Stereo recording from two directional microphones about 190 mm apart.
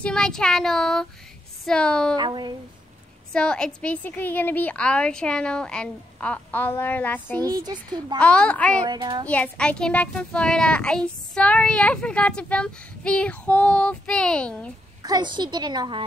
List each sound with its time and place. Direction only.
0.0 s a child's voice: 5° left (ahead or behind)
2.1 s a woman's voice: 25° right (ahead or behind)
3.3 s a woman's voice: 5° left (ahead or behind)
7.4 s a woman's voice: 20° right (ahead or behind)
8.2 s a woman's voice: 5° left (ahead or behind)
8.8 s a woman's voice: 20° right (ahead or behind)
9.3 s a child's voice: 5° left (ahead or behind)
15.0 s a woman's voice: 20° right (ahead or behind)